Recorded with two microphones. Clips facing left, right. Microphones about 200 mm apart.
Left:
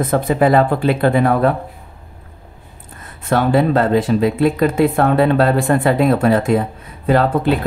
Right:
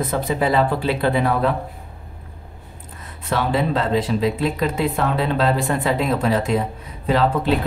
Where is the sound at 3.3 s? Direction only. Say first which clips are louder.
Left 6 dB; 50° left (ahead or behind).